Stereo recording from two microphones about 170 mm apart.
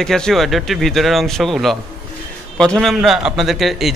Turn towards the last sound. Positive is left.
turn(degrees=0)  # may be behind; listen again after turning